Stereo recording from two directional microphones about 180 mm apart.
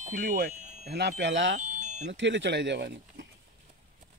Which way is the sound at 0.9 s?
65° right (ahead or behind).